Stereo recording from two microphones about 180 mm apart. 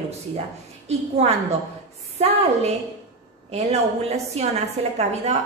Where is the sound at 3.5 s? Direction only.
35° right (ahead or behind).